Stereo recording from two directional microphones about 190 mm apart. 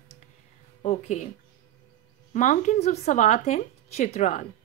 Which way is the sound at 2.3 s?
40° left (ahead or behind).